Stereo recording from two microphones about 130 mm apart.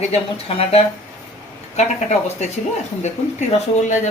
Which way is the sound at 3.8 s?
70° left (ahead or behind).